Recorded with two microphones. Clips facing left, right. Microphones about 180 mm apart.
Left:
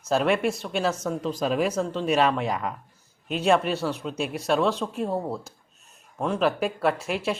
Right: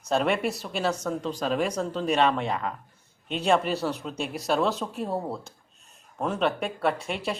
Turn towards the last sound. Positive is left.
turn(degrees=0)  # may be behind; listen again after turning